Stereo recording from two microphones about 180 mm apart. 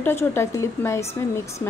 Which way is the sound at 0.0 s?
10° left (ahead or behind).